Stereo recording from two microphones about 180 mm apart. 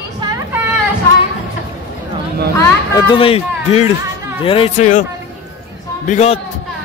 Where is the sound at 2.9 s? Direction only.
30° left (ahead or behind).